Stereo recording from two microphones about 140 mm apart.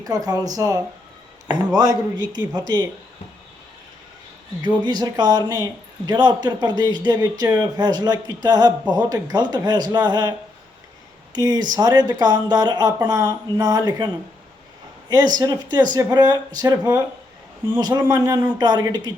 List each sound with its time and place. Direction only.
0.0 s speech: 25° right (ahead or behind)
4.8 s speech: 30° right (ahead or behind)
15.1 s speech: 30° right (ahead or behind)